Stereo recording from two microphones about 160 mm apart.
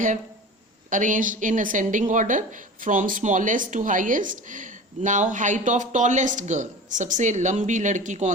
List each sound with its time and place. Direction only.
0.9 s a woman's voice: 55° right (ahead or behind)